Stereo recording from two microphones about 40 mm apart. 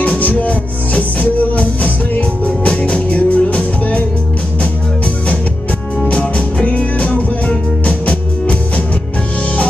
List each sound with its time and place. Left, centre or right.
0.0 s music: left
6.0 s music: left